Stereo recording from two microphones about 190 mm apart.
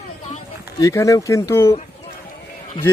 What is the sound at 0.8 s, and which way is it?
Speech, 15° left (ahead or behind).